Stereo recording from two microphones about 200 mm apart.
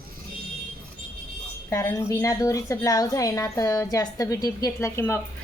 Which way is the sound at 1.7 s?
15° left (ahead or behind).